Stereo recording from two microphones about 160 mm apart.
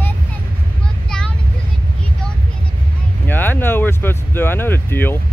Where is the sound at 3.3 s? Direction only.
10° left (ahead or behind).